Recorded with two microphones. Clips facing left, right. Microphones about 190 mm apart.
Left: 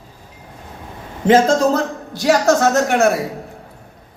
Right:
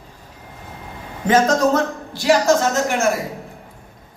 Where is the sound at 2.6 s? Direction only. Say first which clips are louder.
Left 4 dB; 65° left (ahead or behind).